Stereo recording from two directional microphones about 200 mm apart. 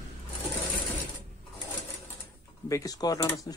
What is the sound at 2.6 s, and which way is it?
Speech, 15° left (ahead or behind).